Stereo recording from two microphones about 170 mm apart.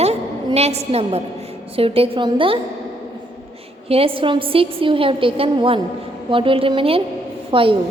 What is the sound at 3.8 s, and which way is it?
A woman's voice, 35° right (ahead or behind).